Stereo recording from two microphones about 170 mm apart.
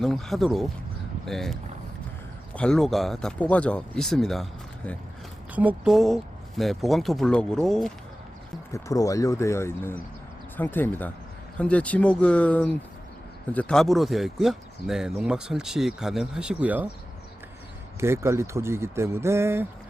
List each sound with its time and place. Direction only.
0.0 s speech: centre (ahead or behind)
2.6 s speech: 5° left (ahead or behind)
5.5 s speech: 5° right (ahead or behind)
8.7 s speech: 20° left (ahead or behind); by 16.9 s 10° right (ahead or behind)
18.0 s speech: 15° right (ahead or behind)